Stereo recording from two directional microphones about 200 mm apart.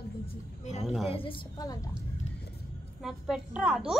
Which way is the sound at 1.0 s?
25° left (ahead or behind).